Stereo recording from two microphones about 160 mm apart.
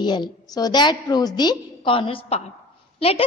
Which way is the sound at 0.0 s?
25° left (ahead or behind).